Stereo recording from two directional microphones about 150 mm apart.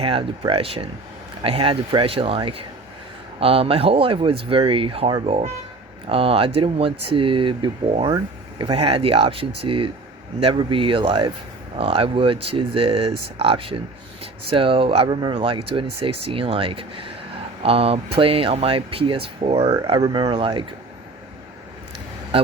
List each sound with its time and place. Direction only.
0.0 s speech: 35° right (ahead or behind)
8.1 s a sound: 25° right (ahead or behind)
8.7 s speech: 40° right (ahead or behind)